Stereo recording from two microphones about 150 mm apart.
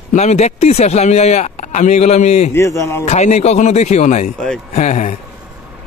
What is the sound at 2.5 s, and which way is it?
Speech, 20° left (ahead or behind).